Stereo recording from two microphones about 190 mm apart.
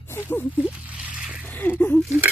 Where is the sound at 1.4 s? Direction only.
10° left (ahead or behind).